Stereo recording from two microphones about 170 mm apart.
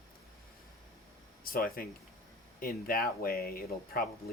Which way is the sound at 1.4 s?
60° left (ahead or behind).